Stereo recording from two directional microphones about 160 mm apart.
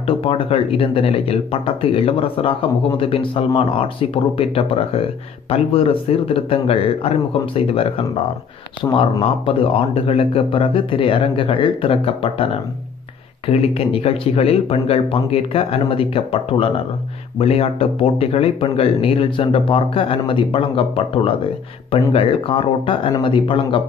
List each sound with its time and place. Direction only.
0.0 s speech: 35° left (ahead or behind)
8.8 s speech: 20° left (ahead or behind)
9.2 s speech: 35° left (ahead or behind)
13.5 s speech: 40° left (ahead or behind)